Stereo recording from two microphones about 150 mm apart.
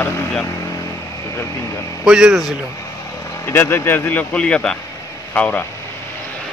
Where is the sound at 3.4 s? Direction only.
15° left (ahead or behind).